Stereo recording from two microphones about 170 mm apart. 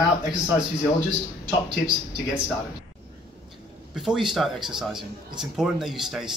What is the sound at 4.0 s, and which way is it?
Speech, centre (ahead or behind).